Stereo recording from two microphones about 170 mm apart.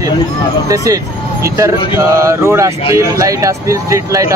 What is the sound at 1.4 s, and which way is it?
Speech, 15° right (ahead or behind).